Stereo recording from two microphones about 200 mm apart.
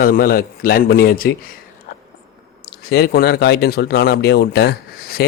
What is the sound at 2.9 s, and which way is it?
Speech, 50° left (ahead or behind).